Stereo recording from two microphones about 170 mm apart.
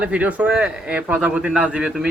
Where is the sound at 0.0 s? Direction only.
10° right (ahead or behind).